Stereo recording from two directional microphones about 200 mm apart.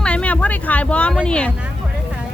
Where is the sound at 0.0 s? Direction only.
5° left (ahead or behind).